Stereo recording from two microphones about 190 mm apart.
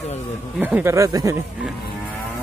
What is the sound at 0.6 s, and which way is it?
Speech, 10° right (ahead or behind).